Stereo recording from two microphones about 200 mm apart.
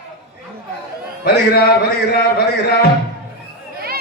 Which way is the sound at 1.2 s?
50° left (ahead or behind).